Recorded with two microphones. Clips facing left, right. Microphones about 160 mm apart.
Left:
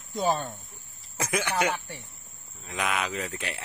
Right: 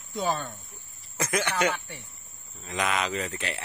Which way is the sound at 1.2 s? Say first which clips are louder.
Right 1 dB; 10° left (ahead or behind).